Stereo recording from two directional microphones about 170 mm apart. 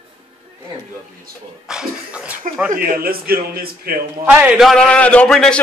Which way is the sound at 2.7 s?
60° right (ahead or behind).